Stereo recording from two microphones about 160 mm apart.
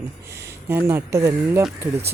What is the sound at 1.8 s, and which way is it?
Speech, 5° right (ahead or behind).